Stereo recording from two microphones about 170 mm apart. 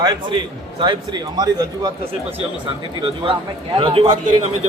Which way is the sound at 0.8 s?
25° right (ahead or behind).